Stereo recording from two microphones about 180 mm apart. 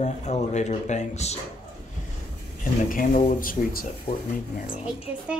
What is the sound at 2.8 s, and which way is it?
Speech, 50° left (ahead or behind).